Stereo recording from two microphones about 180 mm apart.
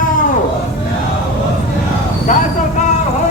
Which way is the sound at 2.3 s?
45° left (ahead or behind).